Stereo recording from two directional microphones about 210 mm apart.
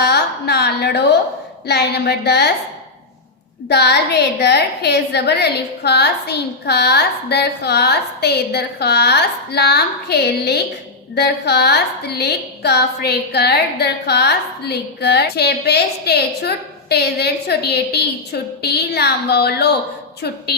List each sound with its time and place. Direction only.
0.0 s a woman's voice: 50° left (ahead or behind)
3.7 s a woman's voice: 50° left (ahead or behind)